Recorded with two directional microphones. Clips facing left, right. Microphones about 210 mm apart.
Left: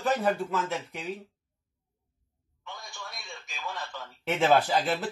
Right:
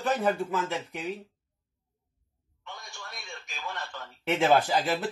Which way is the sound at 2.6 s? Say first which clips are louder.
Left 1 dB; centre (ahead or behind).